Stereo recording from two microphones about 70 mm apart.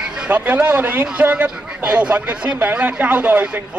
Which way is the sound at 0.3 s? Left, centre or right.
Right.